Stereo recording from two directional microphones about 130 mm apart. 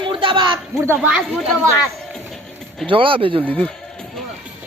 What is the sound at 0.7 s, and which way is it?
Speech, 20° right (ahead or behind).